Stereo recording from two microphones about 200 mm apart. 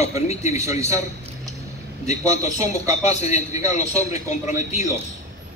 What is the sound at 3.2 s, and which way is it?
A man's voice, 35° left (ahead or behind).